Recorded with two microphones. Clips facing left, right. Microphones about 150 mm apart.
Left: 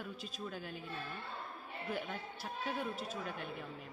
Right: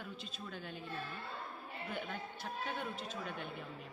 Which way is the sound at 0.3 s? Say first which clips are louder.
Left 3 dB; 5° left (ahead or behind).